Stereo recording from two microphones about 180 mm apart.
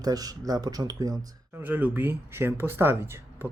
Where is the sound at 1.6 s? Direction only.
10° right (ahead or behind).